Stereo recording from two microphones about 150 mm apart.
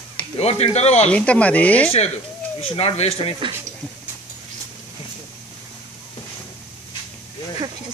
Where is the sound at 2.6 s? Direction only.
40° left (ahead or behind).